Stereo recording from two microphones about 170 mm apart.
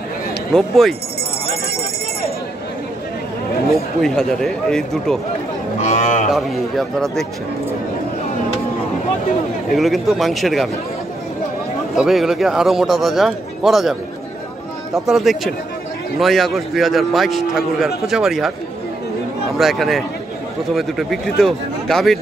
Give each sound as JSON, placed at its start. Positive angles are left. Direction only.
{"t": 0.5, "sound": "a man's voice", "side_deg": 0}
{"t": 4.0, "sound": "a man's voice", "side_deg": 5}
{"t": 5.8, "sound": "cattle", "side_deg": 45}
{"t": 6.3, "sound": "a man's voice", "side_deg": 0}
{"t": 9.7, "sound": "a man's voice", "side_deg": 0}
{"t": 11.9, "sound": "a man's voice", "side_deg": 0}
{"t": 15.0, "sound": "a man's voice", "side_deg": 0}
{"t": 19.6, "sound": "a man's voice", "side_deg": 0}